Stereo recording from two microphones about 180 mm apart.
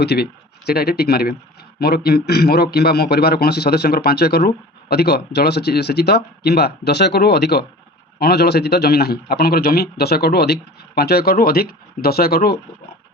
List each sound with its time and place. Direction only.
0.0 s a man's voice: 65° left (ahead or behind)